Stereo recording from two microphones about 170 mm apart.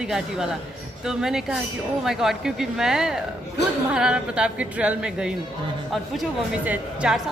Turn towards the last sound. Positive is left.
turn(degrees=-5)  # may be behind; listen again after turning